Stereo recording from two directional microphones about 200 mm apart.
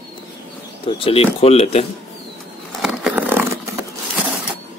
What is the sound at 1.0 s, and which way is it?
Speech, 30° left (ahead or behind).